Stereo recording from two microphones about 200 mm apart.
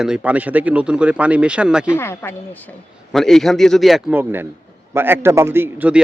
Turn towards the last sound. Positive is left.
turn(degrees=-10)  # may be behind; listen again after turning